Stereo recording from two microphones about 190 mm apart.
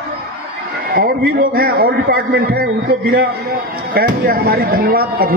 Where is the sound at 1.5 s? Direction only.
50° right (ahead or behind).